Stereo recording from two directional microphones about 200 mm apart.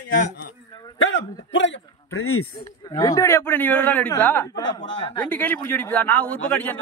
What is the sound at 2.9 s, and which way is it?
A man's voice, 15° left (ahead or behind).